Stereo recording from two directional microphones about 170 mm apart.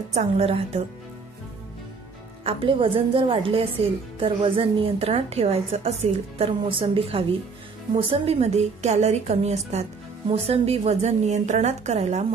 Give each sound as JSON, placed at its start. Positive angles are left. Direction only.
{"t": 0.1, "sound": "a woman's voice", "side_deg": -35}
{"t": 2.4, "sound": "a woman's voice", "side_deg": -30}